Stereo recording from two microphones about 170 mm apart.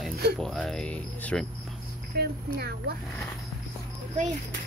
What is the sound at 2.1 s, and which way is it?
Speech, 70° right (ahead or behind).